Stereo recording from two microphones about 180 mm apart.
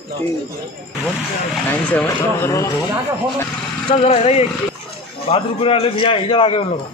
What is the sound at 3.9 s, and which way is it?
A man's voice, 35° left (ahead or behind).